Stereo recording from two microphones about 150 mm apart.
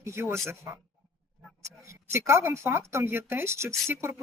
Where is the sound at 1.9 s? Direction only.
20° right (ahead or behind).